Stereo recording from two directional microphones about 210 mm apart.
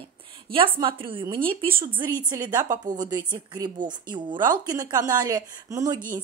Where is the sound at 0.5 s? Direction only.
45° right (ahead or behind).